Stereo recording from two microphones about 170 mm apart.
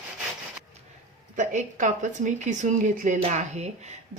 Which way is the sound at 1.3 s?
45° right (ahead or behind).